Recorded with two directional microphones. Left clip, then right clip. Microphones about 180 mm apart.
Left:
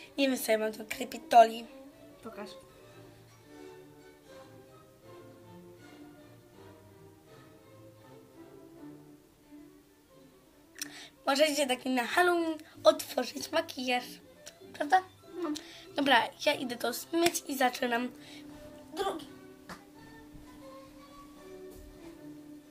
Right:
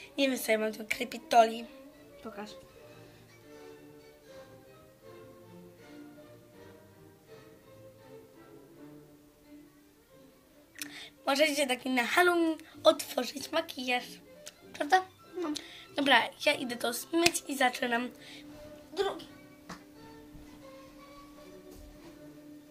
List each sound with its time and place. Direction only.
0.0 s a woman's voice: centre (ahead or behind)
2.2 s speech: 40° right (ahead or behind)
10.8 s a woman's voice: centre (ahead or behind)